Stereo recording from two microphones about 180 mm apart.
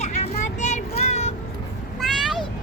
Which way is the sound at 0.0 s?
40° left (ahead or behind).